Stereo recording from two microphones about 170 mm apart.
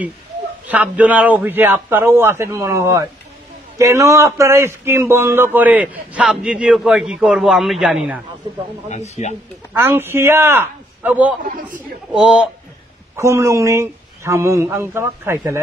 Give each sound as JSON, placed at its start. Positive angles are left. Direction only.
{"t": 0.7, "sound": "speech", "side_deg": -10}
{"t": 8.8, "sound": "speech", "side_deg": 40}
{"t": 9.8, "sound": "a man's voice", "side_deg": -15}
{"t": 13.1, "sound": "speech", "side_deg": -15}